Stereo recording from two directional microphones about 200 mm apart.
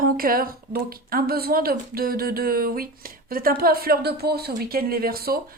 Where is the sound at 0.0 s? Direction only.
45° right (ahead or behind).